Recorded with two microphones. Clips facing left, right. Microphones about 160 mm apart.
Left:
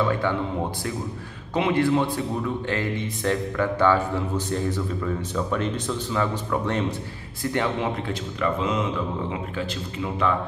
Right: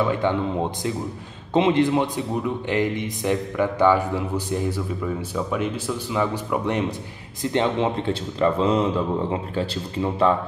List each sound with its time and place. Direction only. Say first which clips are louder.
0.0 s a man's voice: right 2 dB; 20° right (ahead or behind)